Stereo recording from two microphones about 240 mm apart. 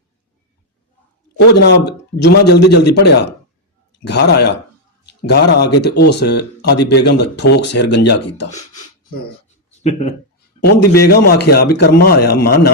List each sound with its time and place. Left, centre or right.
1.5 s speech: left
9.8 s speech: left
10.5 s a sound: left
10.9 s a man's voice: left